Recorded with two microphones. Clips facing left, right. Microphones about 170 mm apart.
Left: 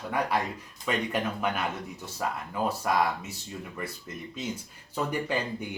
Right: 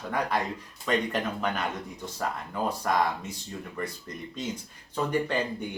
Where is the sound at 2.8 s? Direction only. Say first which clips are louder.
Right 1 dB; 5° left (ahead or behind).